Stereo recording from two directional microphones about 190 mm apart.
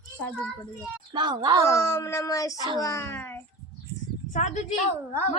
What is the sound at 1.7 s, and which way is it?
Speech, 15° left (ahead or behind).